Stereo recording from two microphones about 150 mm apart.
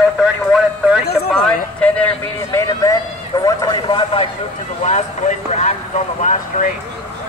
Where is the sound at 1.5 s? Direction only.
10° left (ahead or behind); by 4.3 s 35° left (ahead or behind).